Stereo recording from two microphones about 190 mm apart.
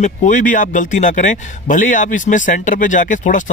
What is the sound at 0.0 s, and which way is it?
Speech, 40° left (ahead or behind).